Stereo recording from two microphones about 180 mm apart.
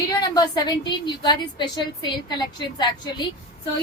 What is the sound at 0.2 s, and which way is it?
A woman's voice, 20° left (ahead or behind).